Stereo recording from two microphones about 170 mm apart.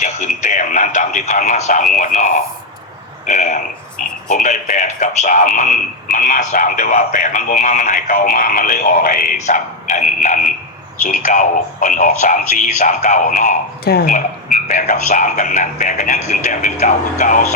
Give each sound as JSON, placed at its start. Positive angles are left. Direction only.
{"t": 0.0, "sound": "speech", "side_deg": 45}